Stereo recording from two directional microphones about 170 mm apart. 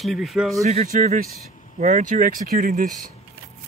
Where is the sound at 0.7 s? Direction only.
40° right (ahead or behind).